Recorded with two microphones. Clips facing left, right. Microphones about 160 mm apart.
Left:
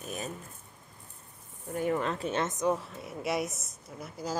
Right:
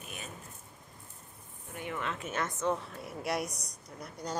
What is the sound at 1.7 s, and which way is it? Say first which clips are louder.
Speech: left 8 dB; 40° left (ahead or behind).